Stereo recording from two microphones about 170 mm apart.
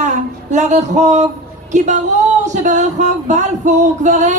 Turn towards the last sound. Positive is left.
turn(degrees=-45)  # may be behind; listen again after turning